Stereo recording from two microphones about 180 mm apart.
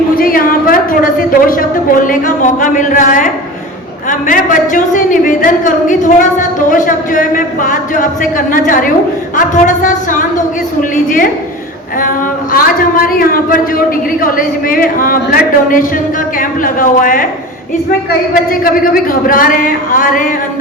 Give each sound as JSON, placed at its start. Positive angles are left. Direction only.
{"t": 0.2, "sound": "a sound", "side_deg": 55}
{"t": 2.0, "sound": "a man's voice", "side_deg": 45}
{"t": 11.9, "sound": "a man's voice", "side_deg": 50}
{"t": 19.3, "sound": "a man's voice", "side_deg": 50}